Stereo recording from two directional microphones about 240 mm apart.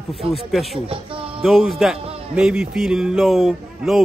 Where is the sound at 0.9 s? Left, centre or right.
Right.